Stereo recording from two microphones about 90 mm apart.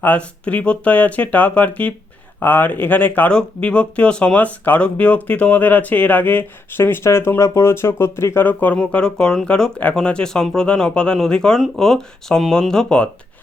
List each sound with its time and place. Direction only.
0.0 s speech: 15° left (ahead or behind)